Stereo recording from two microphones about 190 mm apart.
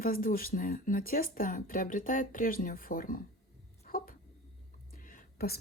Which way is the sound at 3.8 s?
50° left (ahead or behind).